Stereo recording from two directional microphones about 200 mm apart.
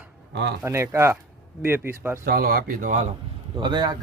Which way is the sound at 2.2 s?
50° right (ahead or behind).